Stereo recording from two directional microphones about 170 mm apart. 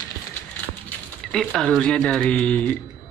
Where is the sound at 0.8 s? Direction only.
Centre (ahead or behind).